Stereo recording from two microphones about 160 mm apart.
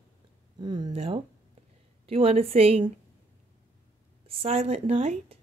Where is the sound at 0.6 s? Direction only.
25° right (ahead or behind).